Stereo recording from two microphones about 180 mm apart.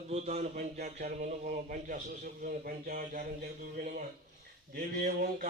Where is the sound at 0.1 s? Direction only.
35° right (ahead or behind).